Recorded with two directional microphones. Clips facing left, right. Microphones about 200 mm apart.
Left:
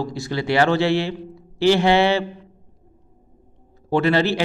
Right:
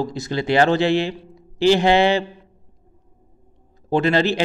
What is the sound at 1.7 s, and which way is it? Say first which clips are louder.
Mantra: right 1 dB; 15° right (ahead or behind).